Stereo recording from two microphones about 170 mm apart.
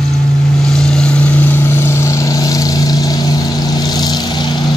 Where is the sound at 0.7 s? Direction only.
5° left (ahead or behind); by 4.5 s 25° left (ahead or behind).